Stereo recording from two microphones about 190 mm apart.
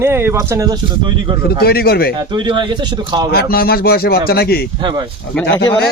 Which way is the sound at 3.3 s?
55° left (ahead or behind).